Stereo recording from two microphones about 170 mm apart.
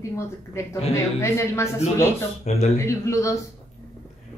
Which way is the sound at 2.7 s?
15° left (ahead or behind).